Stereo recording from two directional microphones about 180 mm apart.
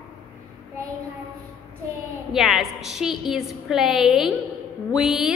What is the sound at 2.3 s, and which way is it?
A woman's voice, centre (ahead or behind).